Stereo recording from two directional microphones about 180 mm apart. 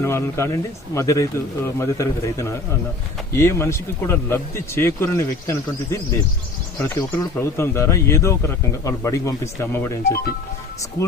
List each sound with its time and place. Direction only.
0.0 s speech: 15° left (ahead or behind)